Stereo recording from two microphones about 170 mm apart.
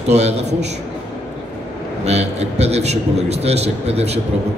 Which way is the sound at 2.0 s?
40° right (ahead or behind).